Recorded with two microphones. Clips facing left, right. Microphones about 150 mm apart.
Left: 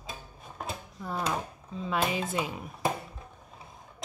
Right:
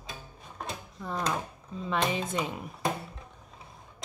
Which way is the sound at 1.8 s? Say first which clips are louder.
Even; 5° left (ahead or behind).